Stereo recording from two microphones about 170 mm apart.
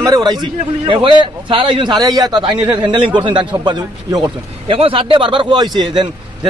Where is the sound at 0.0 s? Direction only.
20° right (ahead or behind).